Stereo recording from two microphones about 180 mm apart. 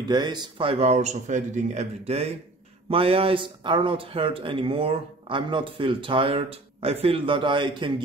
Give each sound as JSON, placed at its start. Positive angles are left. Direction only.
{"t": 0.1, "sound": "speech", "side_deg": -25}